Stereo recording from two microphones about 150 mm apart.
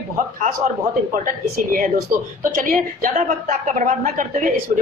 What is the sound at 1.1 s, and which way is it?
A woman's voice, 65° right (ahead or behind).